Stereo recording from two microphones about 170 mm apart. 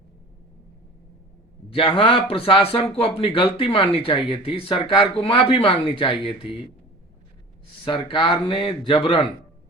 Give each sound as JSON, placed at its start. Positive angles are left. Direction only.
{"t": 1.7, "sound": "speech", "side_deg": 30}
{"t": 7.9, "sound": "speech", "side_deg": 30}